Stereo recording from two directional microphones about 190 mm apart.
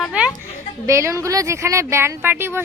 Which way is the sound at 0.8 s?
15° right (ahead or behind).